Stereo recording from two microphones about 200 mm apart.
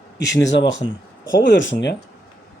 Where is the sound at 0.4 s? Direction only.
65° left (ahead or behind).